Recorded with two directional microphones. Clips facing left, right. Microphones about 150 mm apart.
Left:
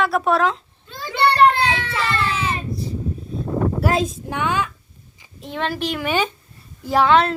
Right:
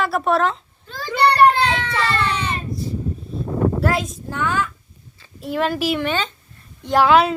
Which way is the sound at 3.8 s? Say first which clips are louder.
Left 1 dB; 20° left (ahead or behind).